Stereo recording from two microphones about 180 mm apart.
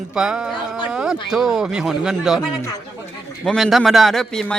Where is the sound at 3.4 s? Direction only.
Centre (ahead or behind).